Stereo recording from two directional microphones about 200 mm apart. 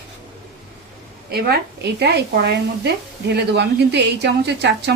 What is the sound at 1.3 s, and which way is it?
A woman's voice, 55° right (ahead or behind).